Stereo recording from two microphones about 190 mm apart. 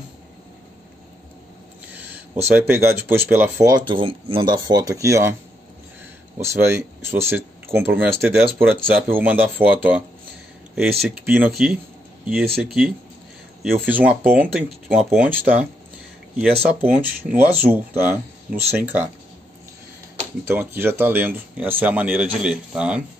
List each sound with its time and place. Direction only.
2.5 s speech: 10° right (ahead or behind)
6.4 s speech: 15° right (ahead or behind)
20.4 s speech: 10° right (ahead or behind)